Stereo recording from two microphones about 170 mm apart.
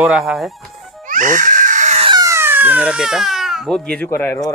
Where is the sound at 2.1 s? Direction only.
20° right (ahead or behind).